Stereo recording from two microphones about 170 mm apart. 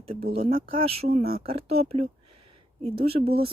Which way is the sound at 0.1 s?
35° right (ahead or behind).